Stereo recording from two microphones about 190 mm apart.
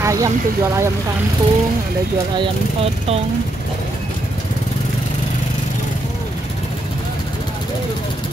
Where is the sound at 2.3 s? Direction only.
30° right (ahead or behind).